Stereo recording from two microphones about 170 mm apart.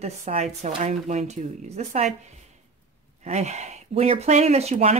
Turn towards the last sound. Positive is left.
turn(degrees=-40)  # may be behind; listen again after turning